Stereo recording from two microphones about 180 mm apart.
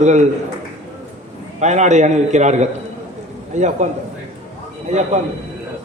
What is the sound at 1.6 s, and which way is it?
A man's voice, 40° right (ahead or behind).